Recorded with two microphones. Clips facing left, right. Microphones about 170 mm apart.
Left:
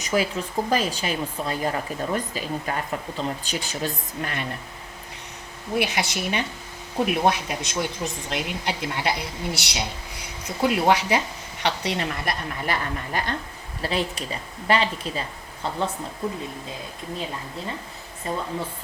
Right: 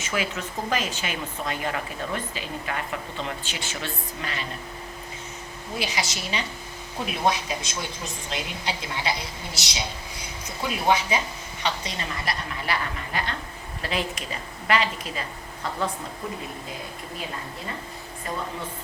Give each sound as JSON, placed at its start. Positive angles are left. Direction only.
{"t": 0.0, "sound": "speech", "side_deg": 35}
{"t": 5.7, "sound": "a woman's voice", "side_deg": 60}
{"t": 10.7, "sound": "a woman's voice", "side_deg": 70}
{"t": 13.8, "sound": "speech", "side_deg": 30}